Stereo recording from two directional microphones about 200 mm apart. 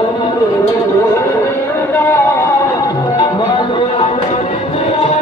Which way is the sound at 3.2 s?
25° left (ahead or behind).